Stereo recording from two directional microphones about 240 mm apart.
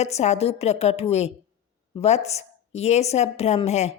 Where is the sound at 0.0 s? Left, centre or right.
Left.